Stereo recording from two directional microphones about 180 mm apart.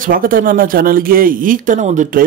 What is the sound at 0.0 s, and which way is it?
Speech, 50° right (ahead or behind).